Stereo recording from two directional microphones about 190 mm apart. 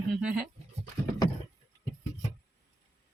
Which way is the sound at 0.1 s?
5° right (ahead or behind).